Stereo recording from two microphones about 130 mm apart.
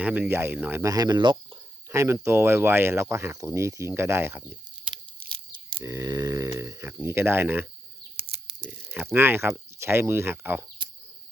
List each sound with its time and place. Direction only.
0.0 s speech: 10° right (ahead or behind)
0.8 s speech: 25° right (ahead or behind)
1.9 s speech: 25° right (ahead or behind)